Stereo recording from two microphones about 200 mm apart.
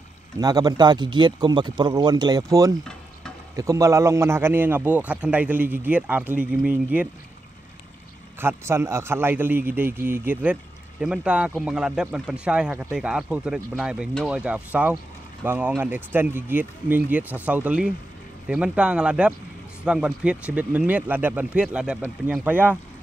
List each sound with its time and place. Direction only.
0.4 s a man's voice: 20° right (ahead or behind)
8.4 s a man's voice: 10° right (ahead or behind)